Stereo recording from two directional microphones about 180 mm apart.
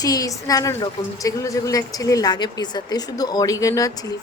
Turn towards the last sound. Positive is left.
turn(degrees=20)  # may be behind; listen again after turning